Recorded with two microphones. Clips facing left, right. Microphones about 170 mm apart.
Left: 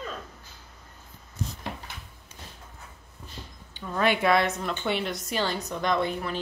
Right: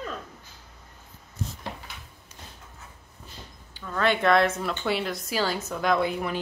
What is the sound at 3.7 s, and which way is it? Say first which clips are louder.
A woman's voice: even; 20° left (ahead or behind).